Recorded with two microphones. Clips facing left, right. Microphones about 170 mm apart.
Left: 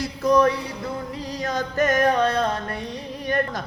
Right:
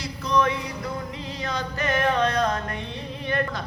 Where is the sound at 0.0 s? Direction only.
45° left (ahead or behind).